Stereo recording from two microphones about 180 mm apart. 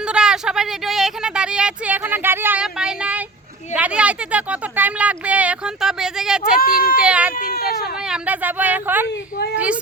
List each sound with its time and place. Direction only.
0.1 s speech: 5° right (ahead or behind)
6.6 s speech: 55° left (ahead or behind)
7.0 s speech: 5° right (ahead or behind)
7.3 s speech: 55° left (ahead or behind)
8.0 s speech: 5° right (ahead or behind)
9.0 s speech: 65° left (ahead or behind)